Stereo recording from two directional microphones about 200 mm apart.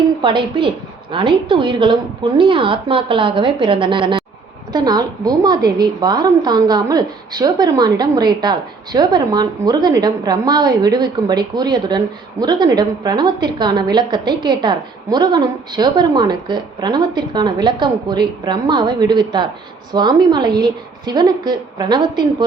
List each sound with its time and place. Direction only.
0.2 s a woman's voice: 25° right (ahead or behind)